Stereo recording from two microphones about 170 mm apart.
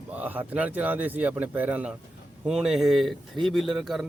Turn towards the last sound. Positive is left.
turn(degrees=0)  # may be behind; listen again after turning